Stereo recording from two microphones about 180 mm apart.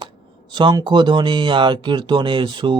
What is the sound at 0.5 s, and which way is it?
Speech, 25° right (ahead or behind).